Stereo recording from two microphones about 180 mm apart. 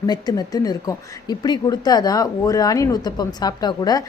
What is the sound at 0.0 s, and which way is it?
Speech, 20° left (ahead or behind).